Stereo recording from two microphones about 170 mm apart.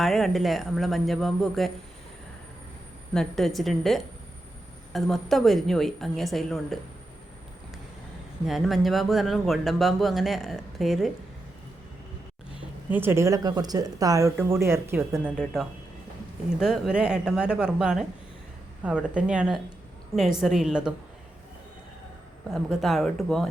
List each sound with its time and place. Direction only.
0.0 s speech: centre (ahead or behind)
3.2 s speech: centre (ahead or behind)
8.4 s speech: centre (ahead or behind)
12.9 s speech: 10° right (ahead or behind)
15.2 s speech: centre (ahead or behind)
22.5 s speech: centre (ahead or behind)